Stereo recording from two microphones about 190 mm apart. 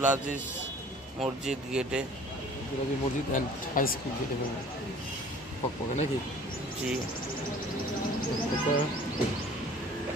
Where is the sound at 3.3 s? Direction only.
45° left (ahead or behind).